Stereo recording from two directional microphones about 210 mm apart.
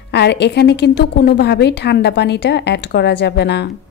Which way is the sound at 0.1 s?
55° left (ahead or behind).